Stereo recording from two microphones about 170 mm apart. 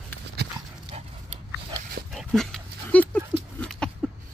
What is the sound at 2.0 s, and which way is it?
Dog, centre (ahead or behind).